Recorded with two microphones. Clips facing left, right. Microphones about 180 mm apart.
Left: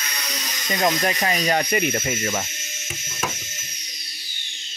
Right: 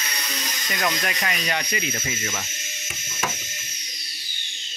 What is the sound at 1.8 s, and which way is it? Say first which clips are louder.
Speech: left 7 dB; 55° left (ahead or behind).